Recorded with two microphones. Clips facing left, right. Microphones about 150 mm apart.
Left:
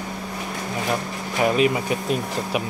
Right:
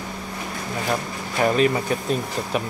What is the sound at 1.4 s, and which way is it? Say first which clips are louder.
Speech: even; 5° left (ahead or behind).